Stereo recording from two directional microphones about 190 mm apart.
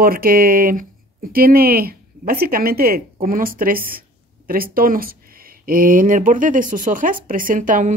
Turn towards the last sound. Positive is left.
turn(degrees=-45)  # may be behind; listen again after turning